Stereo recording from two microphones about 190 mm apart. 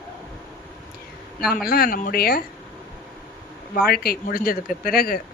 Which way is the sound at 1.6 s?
50° left (ahead or behind).